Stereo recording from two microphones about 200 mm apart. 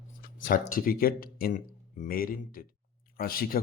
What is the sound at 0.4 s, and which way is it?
Speech, 45° left (ahead or behind).